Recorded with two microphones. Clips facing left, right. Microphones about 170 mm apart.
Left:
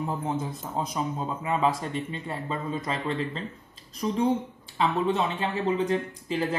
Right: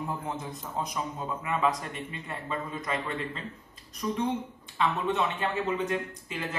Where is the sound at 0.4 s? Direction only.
30° left (ahead or behind).